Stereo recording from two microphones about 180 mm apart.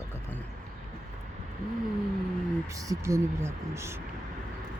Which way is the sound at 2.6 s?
20° right (ahead or behind).